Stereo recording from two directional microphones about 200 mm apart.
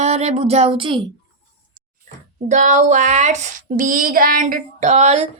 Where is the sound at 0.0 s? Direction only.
35° right (ahead or behind).